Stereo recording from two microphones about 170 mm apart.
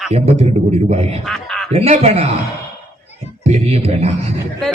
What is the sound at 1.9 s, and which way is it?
Speech, 40° right (ahead or behind).